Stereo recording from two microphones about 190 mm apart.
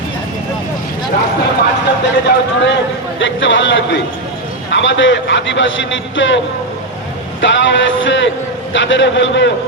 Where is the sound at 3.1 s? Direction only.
80° left.